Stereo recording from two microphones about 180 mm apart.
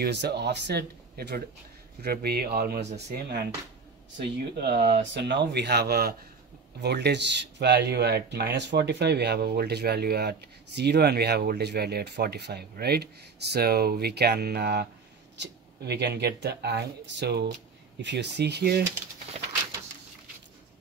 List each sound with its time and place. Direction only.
0.0 s speech: 65° right (ahead or behind)